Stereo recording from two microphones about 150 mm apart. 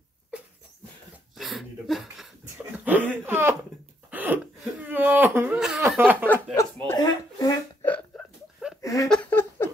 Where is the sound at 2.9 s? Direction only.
10° right (ahead or behind).